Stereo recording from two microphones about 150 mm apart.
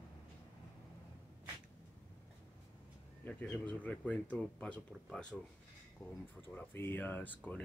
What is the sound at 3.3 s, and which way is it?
Speech, 10° left (ahead or behind).